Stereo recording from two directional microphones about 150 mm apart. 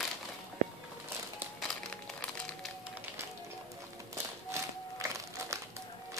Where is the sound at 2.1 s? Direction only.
5° left (ahead or behind).